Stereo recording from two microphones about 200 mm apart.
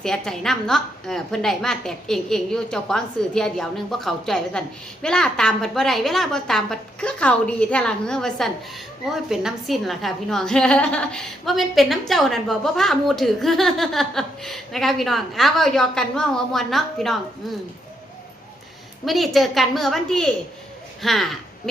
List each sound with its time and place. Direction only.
0.0 s a woman's voice: centre (ahead or behind)
19.0 s a woman's voice: centre (ahead or behind)